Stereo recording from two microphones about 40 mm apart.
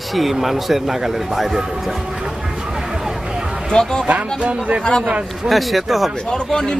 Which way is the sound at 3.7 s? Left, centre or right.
Centre.